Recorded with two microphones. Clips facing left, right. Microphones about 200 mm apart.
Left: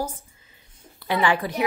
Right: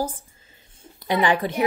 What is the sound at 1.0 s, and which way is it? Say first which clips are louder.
Speech: right 2 dB; 20° right (ahead or behind).